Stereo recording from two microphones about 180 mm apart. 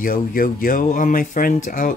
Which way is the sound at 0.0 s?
50° left (ahead or behind).